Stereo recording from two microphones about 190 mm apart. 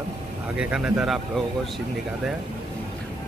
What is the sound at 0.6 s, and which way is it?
Speech, 5° right (ahead or behind).